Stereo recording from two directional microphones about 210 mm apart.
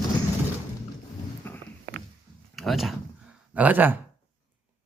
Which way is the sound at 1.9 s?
55° right (ahead or behind).